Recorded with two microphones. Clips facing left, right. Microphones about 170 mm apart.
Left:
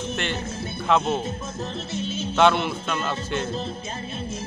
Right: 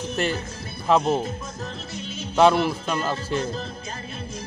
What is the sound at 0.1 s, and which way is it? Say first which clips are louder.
Speech: right 6 dB; 35° right (ahead or behind).